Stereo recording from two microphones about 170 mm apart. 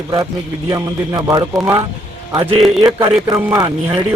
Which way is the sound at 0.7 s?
20° right (ahead or behind).